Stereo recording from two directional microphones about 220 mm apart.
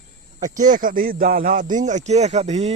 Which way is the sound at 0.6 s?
40° right (ahead or behind).